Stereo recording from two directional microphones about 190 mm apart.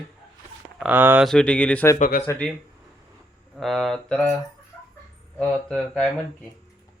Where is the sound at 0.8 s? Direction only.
10° right (ahead or behind).